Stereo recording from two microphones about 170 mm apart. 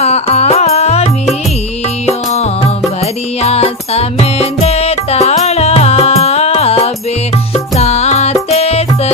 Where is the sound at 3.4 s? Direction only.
40° left (ahead or behind).